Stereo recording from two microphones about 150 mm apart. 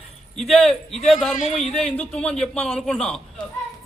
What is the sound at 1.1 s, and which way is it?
A man's voice, centre (ahead or behind).